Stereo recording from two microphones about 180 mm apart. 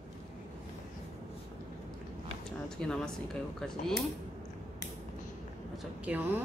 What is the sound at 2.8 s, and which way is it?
Speech, 5° left (ahead or behind).